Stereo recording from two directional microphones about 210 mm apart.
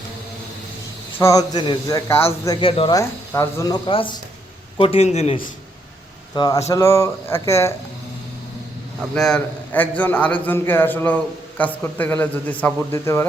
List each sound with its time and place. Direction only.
1.2 s a man's voice: 15° left (ahead or behind)
3.0 s a man's voice: 15° left (ahead or behind); by 5.5 s 30° left (ahead or behind)
6.3 s a man's voice: 20° left (ahead or behind)
9.1 s a man's voice: 5° left (ahead or behind)